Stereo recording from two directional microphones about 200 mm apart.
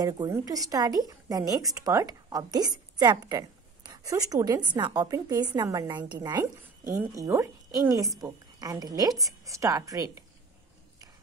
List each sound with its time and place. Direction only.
0.0 s a woman's voice: 20° right (ahead or behind)